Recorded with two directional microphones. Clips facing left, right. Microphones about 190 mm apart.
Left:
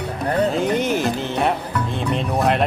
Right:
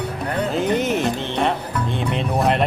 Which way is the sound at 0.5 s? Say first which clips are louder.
Even; centre (ahead or behind).